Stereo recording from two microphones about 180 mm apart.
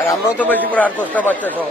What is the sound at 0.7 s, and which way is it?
Speech, 10° left (ahead or behind).